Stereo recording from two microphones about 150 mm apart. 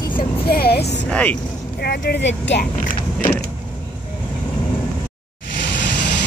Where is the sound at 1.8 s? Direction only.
90° left.